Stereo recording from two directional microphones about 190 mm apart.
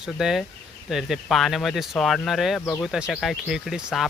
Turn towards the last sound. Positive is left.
turn(degrees=0)  # may be behind; listen again after turning